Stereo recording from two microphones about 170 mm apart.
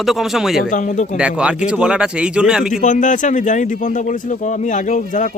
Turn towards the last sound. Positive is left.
turn(degrees=50)  # may be behind; listen again after turning